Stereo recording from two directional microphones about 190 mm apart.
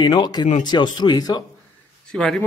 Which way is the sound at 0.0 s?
20° left (ahead or behind).